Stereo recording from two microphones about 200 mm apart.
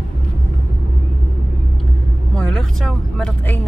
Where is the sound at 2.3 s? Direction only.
5° left (ahead or behind).